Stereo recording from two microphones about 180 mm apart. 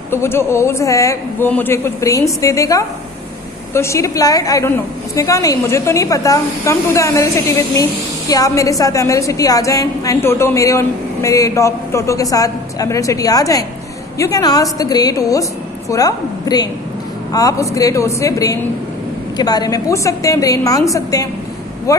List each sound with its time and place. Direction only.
0.1 s a woman's voice: 15° left (ahead or behind)